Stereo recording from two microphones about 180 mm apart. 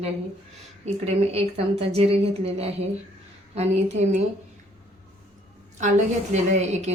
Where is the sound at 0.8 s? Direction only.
35° right (ahead or behind).